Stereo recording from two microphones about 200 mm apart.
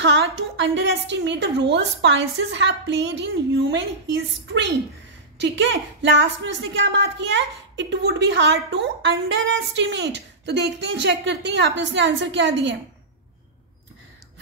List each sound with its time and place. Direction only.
0.0 s a woman's voice: 65° right (ahead or behind)